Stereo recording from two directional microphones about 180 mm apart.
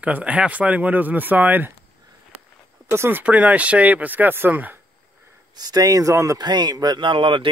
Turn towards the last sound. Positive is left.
turn(degrees=-25)  # may be behind; listen again after turning